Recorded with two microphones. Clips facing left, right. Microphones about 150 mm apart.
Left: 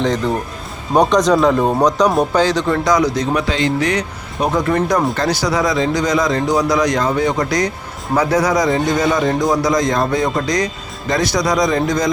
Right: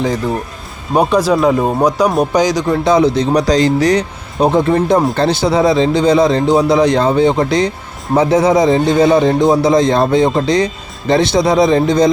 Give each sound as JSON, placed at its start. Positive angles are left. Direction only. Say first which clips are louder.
{"t": 0.0, "sound": "speech", "louder": "right 1 dB", "side_deg": -10}
{"t": 2.8, "sound": "speech", "louder": "right 7 dB", "side_deg": -25}
{"t": 3.4, "sound": "speech", "louder": "right 6 dB", "side_deg": -40}